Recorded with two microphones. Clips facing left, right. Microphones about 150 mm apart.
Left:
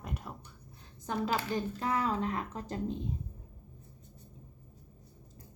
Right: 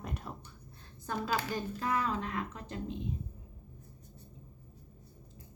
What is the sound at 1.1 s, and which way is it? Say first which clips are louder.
Speech: left 2 dB; 25° left (ahead or behind).